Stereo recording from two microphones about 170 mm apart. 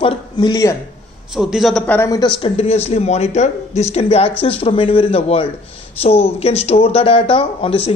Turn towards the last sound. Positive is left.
turn(degrees=35)  # may be behind; listen again after turning